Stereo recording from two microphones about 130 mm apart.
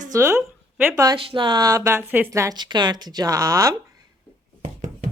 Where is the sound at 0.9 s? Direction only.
30° right (ahead or behind).